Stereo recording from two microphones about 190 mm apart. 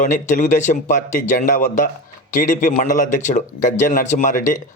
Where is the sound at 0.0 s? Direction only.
40° left (ahead or behind).